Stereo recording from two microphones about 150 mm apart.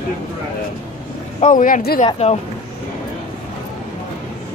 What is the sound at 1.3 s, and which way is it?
Speech, 55° left (ahead or behind).